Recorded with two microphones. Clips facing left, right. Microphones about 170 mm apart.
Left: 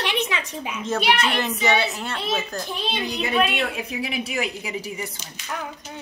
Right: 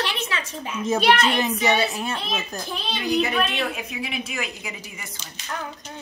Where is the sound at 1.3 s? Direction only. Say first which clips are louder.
Right 1 dB; 15° right (ahead or behind).